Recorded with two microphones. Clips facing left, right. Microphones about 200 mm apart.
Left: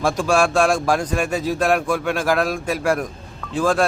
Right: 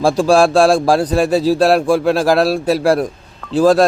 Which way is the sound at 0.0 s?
30° right (ahead or behind).